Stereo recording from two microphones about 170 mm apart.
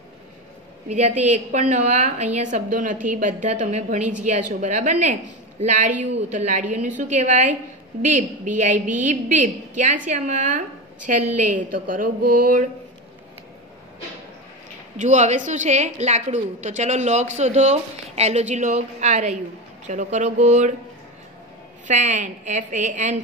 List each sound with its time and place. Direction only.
0.8 s a woman's voice: 45° right (ahead or behind)
15.0 s a woman's voice: 45° right (ahead or behind)
21.8 s a woman's voice: 45° right (ahead or behind)